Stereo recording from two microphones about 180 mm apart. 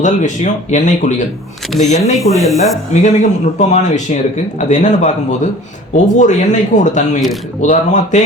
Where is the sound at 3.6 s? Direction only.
40° left (ahead or behind).